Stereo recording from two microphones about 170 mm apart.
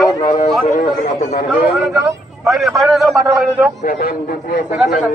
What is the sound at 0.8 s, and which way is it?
Speech, 45° left (ahead or behind).